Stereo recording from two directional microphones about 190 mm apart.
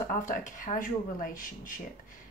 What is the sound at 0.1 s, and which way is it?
A woman's voice, 45° left (ahead or behind).